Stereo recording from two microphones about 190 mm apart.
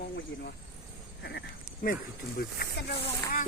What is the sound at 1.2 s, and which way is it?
Goat, 60° left (ahead or behind).